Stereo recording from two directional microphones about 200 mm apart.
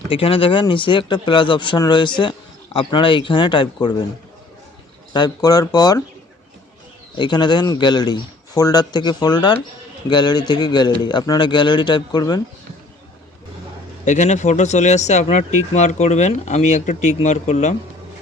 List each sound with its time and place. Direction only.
0.1 s speech: 25° left (ahead or behind)
5.1 s speech: 20° left (ahead or behind)
7.2 s speech: 20° left (ahead or behind)
14.0 s speech: 35° left (ahead or behind)